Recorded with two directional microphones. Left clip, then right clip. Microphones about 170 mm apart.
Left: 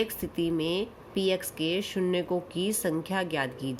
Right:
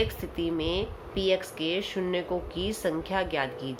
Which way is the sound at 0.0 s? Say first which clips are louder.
Even; 40° left (ahead or behind).